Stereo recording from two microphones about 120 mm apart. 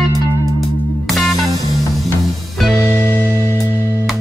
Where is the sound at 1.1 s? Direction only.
Centre (ahead or behind).